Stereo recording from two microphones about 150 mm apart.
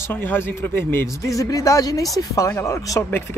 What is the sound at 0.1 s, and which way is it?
Speech, 15° left (ahead or behind).